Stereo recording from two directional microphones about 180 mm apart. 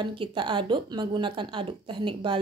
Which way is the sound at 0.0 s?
25° right (ahead or behind).